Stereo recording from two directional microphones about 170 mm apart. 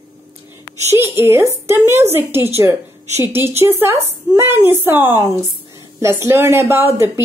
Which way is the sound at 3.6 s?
15° right (ahead or behind).